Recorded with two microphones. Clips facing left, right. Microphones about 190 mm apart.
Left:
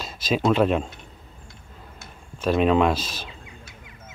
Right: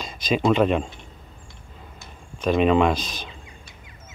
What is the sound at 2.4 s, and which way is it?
Speech, centre (ahead or behind).